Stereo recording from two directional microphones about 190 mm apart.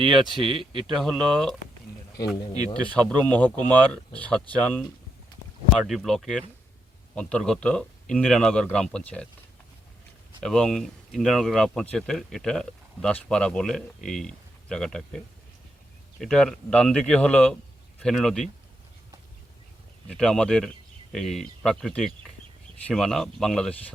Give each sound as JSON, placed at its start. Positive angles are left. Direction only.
{"t": 0.7, "sound": "speech", "side_deg": -25}
{"t": 0.9, "sound": "speech", "side_deg": 0}
{"t": 2.5, "sound": "speech", "side_deg": 35}
{"t": 2.9, "sound": "speech", "side_deg": 10}
{"t": 10.4, "sound": "speech", "side_deg": 5}
{"t": 16.2, "sound": "speech", "side_deg": 5}
{"t": 20.1, "sound": "speech", "side_deg": 5}